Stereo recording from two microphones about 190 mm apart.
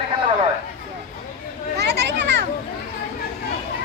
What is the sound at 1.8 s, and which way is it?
Children playing, 65° right (ahead or behind).